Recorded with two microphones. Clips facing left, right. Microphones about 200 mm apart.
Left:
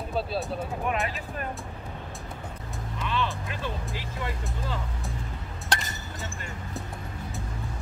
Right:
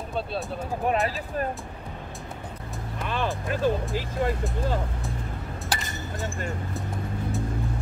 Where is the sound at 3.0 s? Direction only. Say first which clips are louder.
Right 2 dB; 50° right (ahead or behind).